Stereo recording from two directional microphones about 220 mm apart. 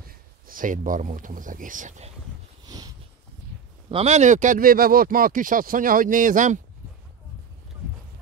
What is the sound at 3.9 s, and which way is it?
Speech, 30° right (ahead or behind).